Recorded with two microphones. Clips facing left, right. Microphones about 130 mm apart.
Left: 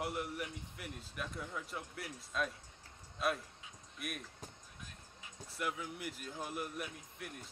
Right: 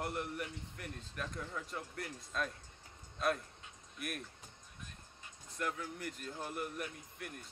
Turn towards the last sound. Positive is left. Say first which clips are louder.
# right 1 dB
turn(degrees=5)  # may be behind; listen again after turning